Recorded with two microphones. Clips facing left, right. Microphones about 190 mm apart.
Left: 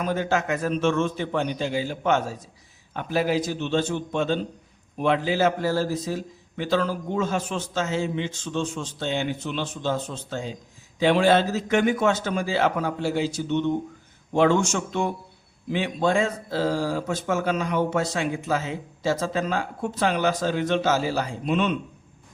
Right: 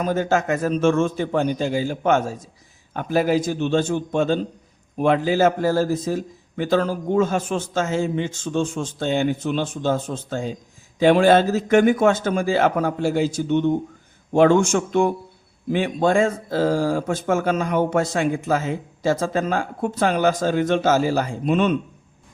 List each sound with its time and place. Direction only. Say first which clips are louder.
0.0 s speech: right 4 dB; 45° right (ahead or behind)